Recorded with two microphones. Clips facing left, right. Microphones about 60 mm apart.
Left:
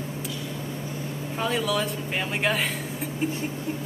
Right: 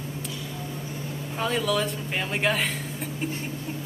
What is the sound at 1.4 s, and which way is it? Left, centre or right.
Speech, centre.